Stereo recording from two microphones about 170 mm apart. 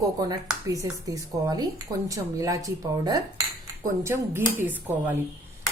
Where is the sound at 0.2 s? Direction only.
20° right (ahead or behind).